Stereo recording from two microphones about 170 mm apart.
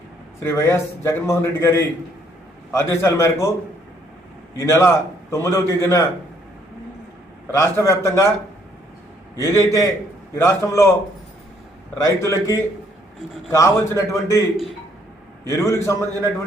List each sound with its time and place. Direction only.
0.4 s a man's voice: 15° left (ahead or behind)
4.6 s a man's voice: 15° left (ahead or behind)
7.5 s a man's voice: 15° left (ahead or behind)
9.4 s a man's voice: 20° left (ahead or behind)
12.0 s a man's voice: 20° left (ahead or behind)
14.5 s a man's voice: centre (ahead or behind)
15.4 s a man's voice: 20° left (ahead or behind)